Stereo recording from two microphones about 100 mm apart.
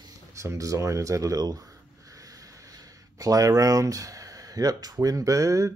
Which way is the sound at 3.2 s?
35° right (ahead or behind).